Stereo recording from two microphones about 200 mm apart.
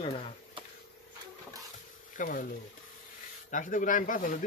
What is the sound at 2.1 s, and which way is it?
Speech, 40° left (ahead or behind).